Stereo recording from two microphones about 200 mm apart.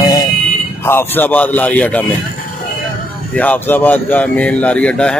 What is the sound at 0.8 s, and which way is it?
Speech, 10° left (ahead or behind).